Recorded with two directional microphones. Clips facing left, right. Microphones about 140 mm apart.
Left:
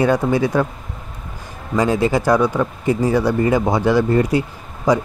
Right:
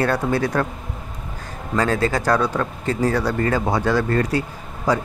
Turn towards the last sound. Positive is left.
turn(degrees=15)  # may be behind; listen again after turning